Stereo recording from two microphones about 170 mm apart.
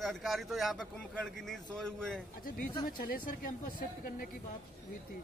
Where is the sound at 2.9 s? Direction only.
55° left (ahead or behind).